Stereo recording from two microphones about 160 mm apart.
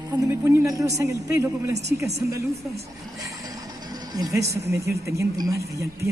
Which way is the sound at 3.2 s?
25° right (ahead or behind).